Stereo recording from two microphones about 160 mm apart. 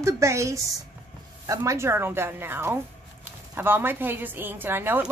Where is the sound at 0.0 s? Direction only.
20° right (ahead or behind).